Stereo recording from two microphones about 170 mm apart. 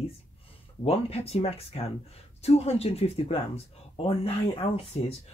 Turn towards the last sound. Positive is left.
turn(degrees=35)  # may be behind; listen again after turning